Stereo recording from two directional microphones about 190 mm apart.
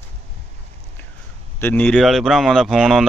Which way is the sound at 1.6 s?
10° left (ahead or behind).